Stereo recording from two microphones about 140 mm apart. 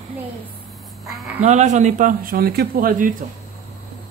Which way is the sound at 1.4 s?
55° right (ahead or behind).